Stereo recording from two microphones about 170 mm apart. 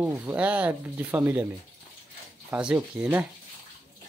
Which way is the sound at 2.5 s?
10° right (ahead or behind).